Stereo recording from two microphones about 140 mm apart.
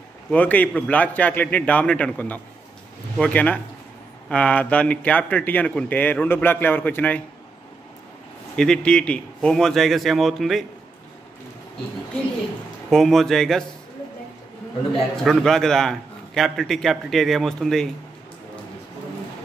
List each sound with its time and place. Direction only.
0.3 s speech: 10° left (ahead or behind)
8.5 s a man's voice: 5° left (ahead or behind)
12.9 s a man's voice: centre (ahead or behind)
15.2 s a man's voice: centre (ahead or behind)